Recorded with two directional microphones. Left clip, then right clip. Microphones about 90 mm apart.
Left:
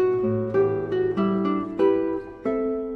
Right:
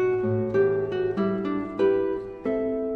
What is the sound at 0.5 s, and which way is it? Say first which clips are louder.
Music: even; 20° left (ahead or behind).